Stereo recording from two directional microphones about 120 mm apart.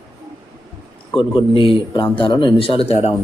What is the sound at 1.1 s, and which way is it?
Speech, 45° left (ahead or behind).